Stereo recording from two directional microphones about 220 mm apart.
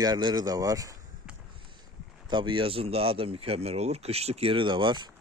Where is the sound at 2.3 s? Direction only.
20° right (ahead or behind).